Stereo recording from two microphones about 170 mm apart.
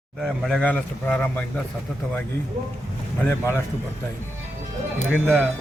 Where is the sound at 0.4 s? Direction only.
5° left (ahead or behind).